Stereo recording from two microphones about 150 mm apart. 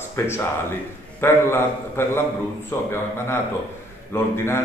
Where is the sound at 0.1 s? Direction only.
15° left (ahead or behind).